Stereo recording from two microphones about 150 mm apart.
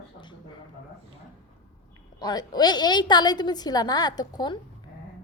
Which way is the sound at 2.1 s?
25° left (ahead or behind).